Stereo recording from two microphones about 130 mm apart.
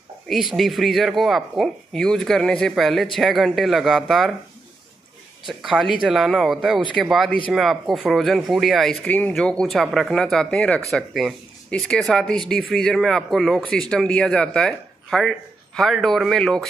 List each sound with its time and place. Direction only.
0.3 s speech: centre (ahead or behind)
5.5 s speech: centre (ahead or behind)
9.0 s speech: 10° left (ahead or behind)